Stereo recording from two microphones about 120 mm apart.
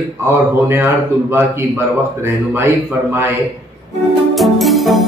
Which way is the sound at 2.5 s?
20° right (ahead or behind).